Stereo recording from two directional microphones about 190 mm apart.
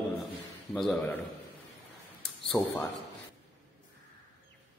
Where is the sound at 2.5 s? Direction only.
10° left (ahead or behind).